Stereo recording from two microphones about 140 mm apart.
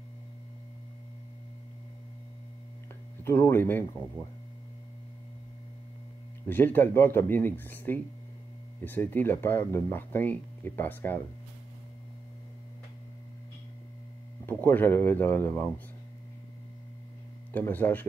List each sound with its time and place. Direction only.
3.3 s speech: 15° left (ahead or behind)
6.4 s speech: 15° left (ahead or behind)
14.4 s speech: 15° left (ahead or behind)
17.5 s speech: 15° left (ahead or behind)